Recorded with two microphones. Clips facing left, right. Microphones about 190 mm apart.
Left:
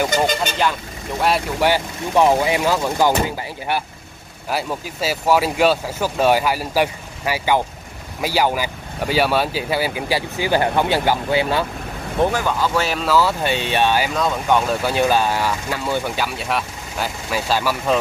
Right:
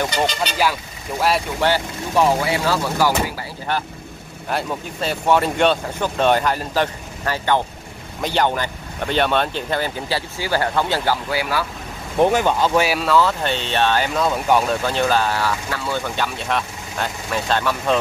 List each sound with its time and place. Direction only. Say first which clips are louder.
0.1 s speech: left 2 dB; 50° left (ahead or behind)
1.6 s speech: left 1 dB; 15° left (ahead or behind)
4.5 s speech: even; 5° left (ahead or behind); by 11.6 s 25° left (ahead or behind)
12.2 s speech: right 3 dB; 20° right (ahead or behind)
13.0 s speech: even; 5° left (ahead or behind)
14.1 s speech: right 1 dB; 5° right (ahead or behind)
14.8 s speech: left 2 dB; 10° left (ahead or behind)